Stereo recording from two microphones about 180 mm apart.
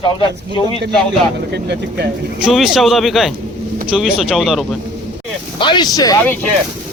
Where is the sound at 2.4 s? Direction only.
Centre (ahead or behind).